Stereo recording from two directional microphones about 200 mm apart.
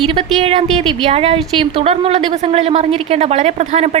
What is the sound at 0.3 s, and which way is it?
A woman's voice, 30° right (ahead or behind).